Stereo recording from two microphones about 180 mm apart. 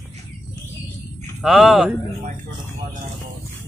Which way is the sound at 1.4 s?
Centre (ahead or behind).